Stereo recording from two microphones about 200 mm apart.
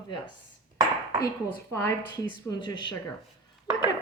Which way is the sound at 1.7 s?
10° left (ahead or behind).